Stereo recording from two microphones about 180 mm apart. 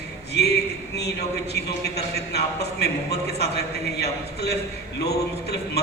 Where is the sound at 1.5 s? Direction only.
65° left (ahead or behind).